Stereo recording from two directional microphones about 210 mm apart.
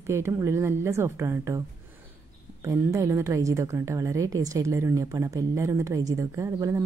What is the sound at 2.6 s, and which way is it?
A woman's voice, 15° right (ahead or behind).